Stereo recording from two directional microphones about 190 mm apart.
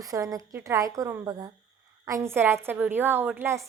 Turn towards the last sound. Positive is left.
turn(degrees=-15)  # may be behind; listen again after turning